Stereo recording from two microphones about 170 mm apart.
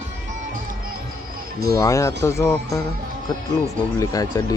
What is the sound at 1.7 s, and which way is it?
Speech, 20° left (ahead or behind).